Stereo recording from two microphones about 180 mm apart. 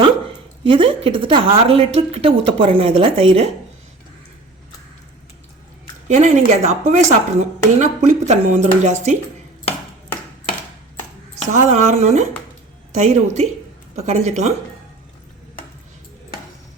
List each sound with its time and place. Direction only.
0.6 s a woman's voice: 30° right (ahead or behind)
6.1 s a woman's voice: 40° right (ahead or behind)
11.4 s a woman's voice: 40° right (ahead or behind)